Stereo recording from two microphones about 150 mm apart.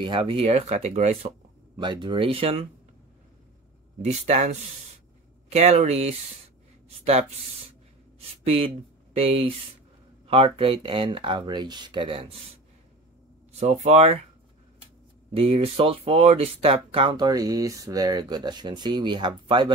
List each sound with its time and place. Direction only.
0.0 s speech: 35° right (ahead or behind)
1.8 s speech: 30° right (ahead or behind)
4.0 s speech: 50° right (ahead or behind)
8.2 s speech: 40° right (ahead or behind)
13.5 s speech: 45° right (ahead or behind)
15.3 s speech: 40° right (ahead or behind)